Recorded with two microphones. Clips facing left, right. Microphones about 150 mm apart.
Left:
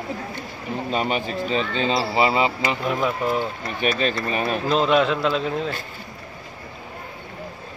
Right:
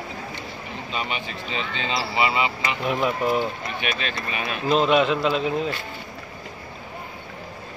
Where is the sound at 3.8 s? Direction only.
35° left (ahead or behind).